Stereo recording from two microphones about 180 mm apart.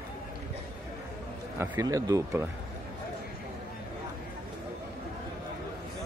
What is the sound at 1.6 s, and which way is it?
Speech, 20° right (ahead or behind).